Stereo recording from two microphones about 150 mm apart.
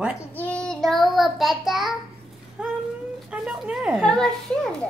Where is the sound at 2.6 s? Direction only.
5° right (ahead or behind).